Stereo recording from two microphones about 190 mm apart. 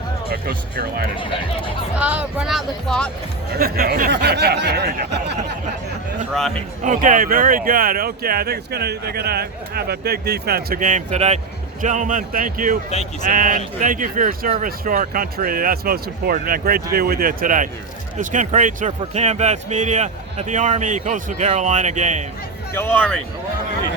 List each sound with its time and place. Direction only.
0.3 s speech: 55° right (ahead or behind)
1.1 s speech: 25° left (ahead or behind)
2.0 s speech: 5° right (ahead or behind)
3.6 s speech: 50° right (ahead or behind)
6.3 s speech: centre (ahead or behind)
6.8 s speech: 40° right (ahead or behind)
22.7 s a man's voice: 10° left (ahead or behind)